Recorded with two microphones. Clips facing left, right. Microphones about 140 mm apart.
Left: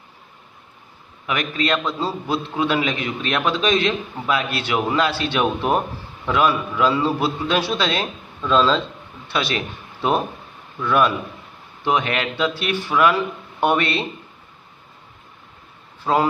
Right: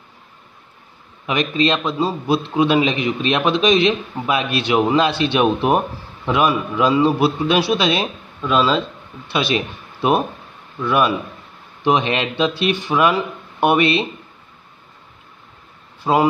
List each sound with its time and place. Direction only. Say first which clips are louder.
1.2 s a man's voice: right 5 dB; 20° right (ahead or behind)
10.8 s a man's voice: right 1 dB; 10° right (ahead or behind)
16.0 s speech: right 3 dB; 15° right (ahead or behind)